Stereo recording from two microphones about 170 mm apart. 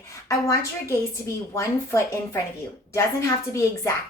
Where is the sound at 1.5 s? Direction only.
15° left (ahead or behind).